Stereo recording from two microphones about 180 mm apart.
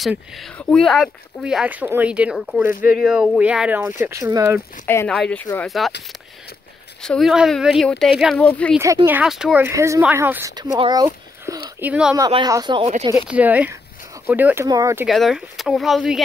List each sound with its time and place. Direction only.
0.0 s speech: centre (ahead or behind); by 4.6 s 15° right (ahead or behind)
4.8 s speech: 10° left (ahead or behind)
7.0 s speech: centre (ahead or behind)
8.7 s speech: 15° right (ahead or behind)
9.7 s speech: 15° right (ahead or behind)
11.8 s speech: 5° right (ahead or behind)
12.3 s speech: 25° right (ahead or behind)
13.3 s speech: 10° right (ahead or behind)
15.0 s speech: centre (ahead or behind)